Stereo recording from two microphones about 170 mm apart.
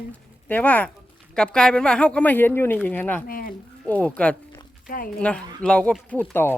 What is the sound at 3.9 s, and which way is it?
Speech, 10° left (ahead or behind).